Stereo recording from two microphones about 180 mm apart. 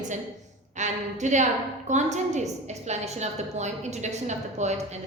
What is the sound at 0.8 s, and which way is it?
A woman's voice, 40° right (ahead or behind).